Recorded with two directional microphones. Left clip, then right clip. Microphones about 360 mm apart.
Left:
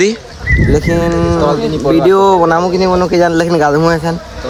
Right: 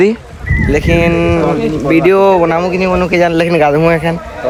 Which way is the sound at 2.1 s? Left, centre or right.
Centre.